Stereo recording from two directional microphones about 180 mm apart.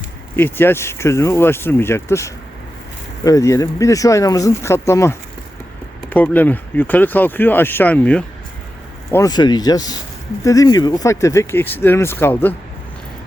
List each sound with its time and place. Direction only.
0.3 s speech: 10° left (ahead or behind)
9.1 s speech: 20° left (ahead or behind)